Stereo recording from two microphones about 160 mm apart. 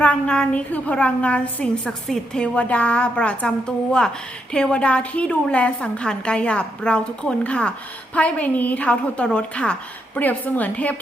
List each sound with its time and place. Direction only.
0.0 s a woman's voice: 10° left (ahead or behind)
4.5 s a woman's voice: 5° left (ahead or behind)